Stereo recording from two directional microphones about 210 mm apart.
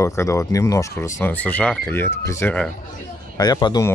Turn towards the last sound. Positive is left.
turn(degrees=20)  # may be behind; listen again after turning